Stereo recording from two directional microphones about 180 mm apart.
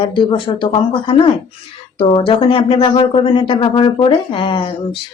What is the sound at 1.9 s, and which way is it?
Speech, 30° left (ahead or behind).